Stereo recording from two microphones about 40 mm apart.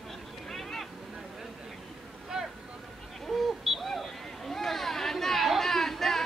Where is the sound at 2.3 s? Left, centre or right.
Centre.